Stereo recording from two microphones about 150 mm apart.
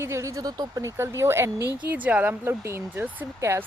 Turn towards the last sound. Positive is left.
turn(degrees=-15)  # may be behind; listen again after turning